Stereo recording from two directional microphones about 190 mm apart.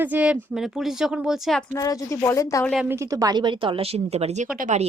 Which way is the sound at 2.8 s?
15° right (ahead or behind).